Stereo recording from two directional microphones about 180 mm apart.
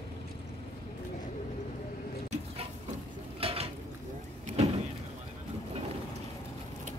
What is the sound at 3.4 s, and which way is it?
Dishes, 30° right (ahead or behind).